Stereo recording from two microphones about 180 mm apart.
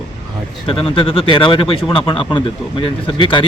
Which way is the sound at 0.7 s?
30° left (ahead or behind).